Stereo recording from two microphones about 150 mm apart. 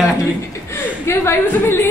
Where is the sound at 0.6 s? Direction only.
15° left (ahead or behind).